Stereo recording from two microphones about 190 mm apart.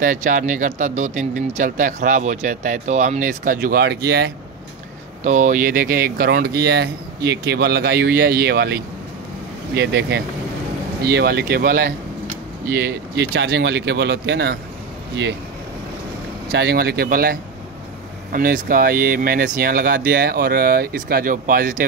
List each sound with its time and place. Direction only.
0.0 s speech: 45° right (ahead or behind)
5.2 s speech: 40° right (ahead or behind); by 8.7 s 60° right (ahead or behind)
9.8 s speech: 60° right (ahead or behind)
16.5 s speech: 60° right (ahead or behind)